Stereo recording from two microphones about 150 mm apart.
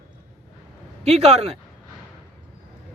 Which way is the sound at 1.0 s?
45° right (ahead or behind).